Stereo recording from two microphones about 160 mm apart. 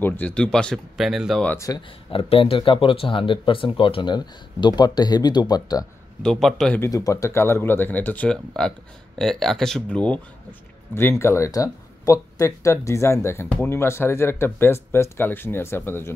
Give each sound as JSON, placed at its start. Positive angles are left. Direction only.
{"t": 0.0, "sound": "speech", "side_deg": 10}
{"t": 1.5, "sound": "speech", "side_deg": 20}
{"t": 1.8, "sound": "speech", "side_deg": 35}
{"t": 6.2, "sound": "speech", "side_deg": 0}
{"t": 6.8, "sound": "speech", "side_deg": 20}